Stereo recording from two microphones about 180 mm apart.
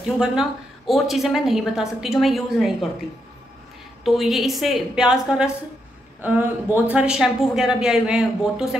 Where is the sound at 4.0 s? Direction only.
Centre (ahead or behind).